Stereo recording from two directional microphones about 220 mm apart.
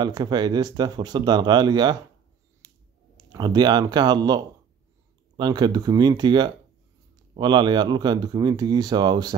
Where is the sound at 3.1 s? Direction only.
20° right (ahead or behind).